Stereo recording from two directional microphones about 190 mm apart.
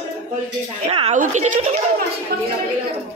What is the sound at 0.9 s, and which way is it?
Speech, 35° right (ahead or behind).